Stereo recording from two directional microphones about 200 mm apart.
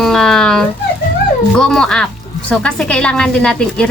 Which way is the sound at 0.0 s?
Centre (ahead or behind).